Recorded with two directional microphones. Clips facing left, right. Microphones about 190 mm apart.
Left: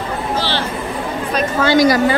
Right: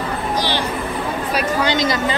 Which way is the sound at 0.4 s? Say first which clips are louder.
Right 1 dB; 15° right (ahead or behind).